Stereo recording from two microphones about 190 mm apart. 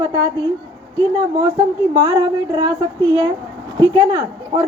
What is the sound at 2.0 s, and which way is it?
A woman's voice, 20° right (ahead or behind).